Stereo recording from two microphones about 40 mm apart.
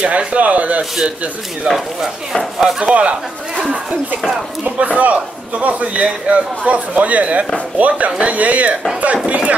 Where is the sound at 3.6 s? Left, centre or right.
Right.